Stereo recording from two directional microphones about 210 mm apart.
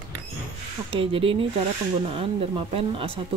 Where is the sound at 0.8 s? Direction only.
25° right (ahead or behind).